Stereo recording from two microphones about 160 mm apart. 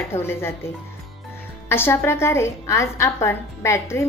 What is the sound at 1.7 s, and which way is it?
A woman's voice, 15° left (ahead or behind).